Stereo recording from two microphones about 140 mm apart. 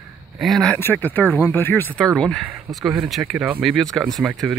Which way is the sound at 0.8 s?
15° left (ahead or behind).